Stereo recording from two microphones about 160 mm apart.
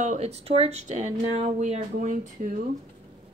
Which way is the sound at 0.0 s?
45° right (ahead or behind).